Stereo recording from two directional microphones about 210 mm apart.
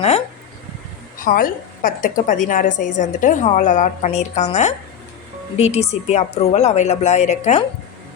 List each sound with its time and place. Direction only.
1.2 s a woman's voice: 40° left (ahead or behind)